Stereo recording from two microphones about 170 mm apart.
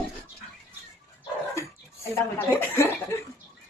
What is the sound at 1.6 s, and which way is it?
Speech, 15° left (ahead or behind).